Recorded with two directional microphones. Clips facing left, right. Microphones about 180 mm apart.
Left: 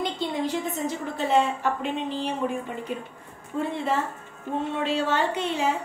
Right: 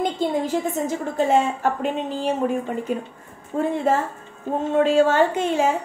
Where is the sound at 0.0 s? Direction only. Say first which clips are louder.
Right 5 dB; 45° right (ahead or behind).